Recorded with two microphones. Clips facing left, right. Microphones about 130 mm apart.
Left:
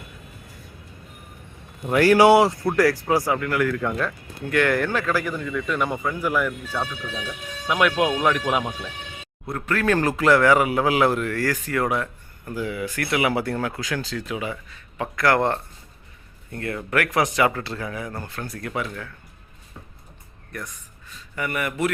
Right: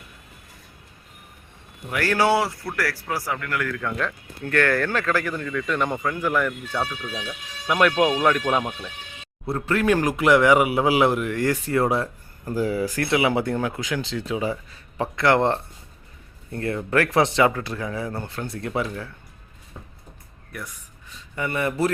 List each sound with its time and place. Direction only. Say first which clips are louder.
2.0 s speech: left 6 dB; 15° left (ahead or behind)
9.5 s speech: right 1 dB; 25° right (ahead or behind)
16.5 s speech: right 3 dB; 30° right (ahead or behind)
17.5 s speech: right 1 dB; 15° right (ahead or behind)
17.9 s speech: right 2 dB; 25° right (ahead or behind)
21.3 s speech: right 2 dB; 25° right (ahead or behind)